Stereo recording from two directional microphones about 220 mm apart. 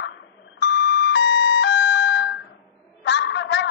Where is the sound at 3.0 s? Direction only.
50° left (ahead or behind).